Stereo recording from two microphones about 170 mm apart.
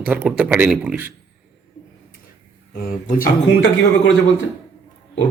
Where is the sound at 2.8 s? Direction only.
55° left (ahead or behind).